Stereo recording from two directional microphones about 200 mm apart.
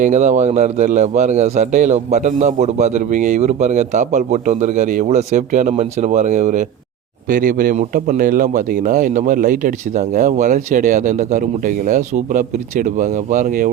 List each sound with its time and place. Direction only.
0.0 s a man's voice: 35° right (ahead or behind)